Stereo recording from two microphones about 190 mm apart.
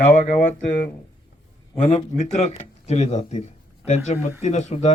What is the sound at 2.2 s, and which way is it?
A man's voice, 35° left (ahead or behind).